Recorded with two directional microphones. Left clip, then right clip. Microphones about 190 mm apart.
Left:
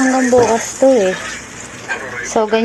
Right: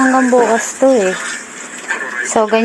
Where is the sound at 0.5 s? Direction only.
Centre (ahead or behind).